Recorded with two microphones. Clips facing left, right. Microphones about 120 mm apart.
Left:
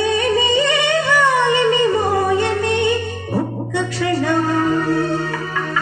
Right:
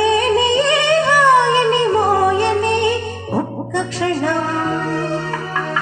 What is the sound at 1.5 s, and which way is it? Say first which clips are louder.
Music: right 1 dB; 40° right (ahead or behind).